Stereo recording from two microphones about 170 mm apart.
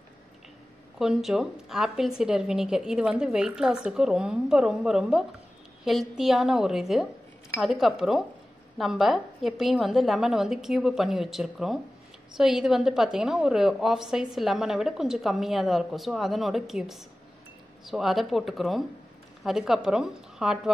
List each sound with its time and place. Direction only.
0.9 s a woman's voice: 5° right (ahead or behind)